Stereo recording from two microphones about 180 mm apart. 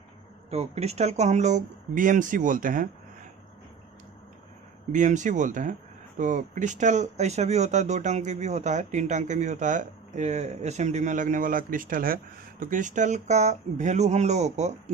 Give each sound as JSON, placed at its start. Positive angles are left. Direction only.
{"t": 0.5, "sound": "speech", "side_deg": -35}
{"t": 4.9, "sound": "speech", "side_deg": -45}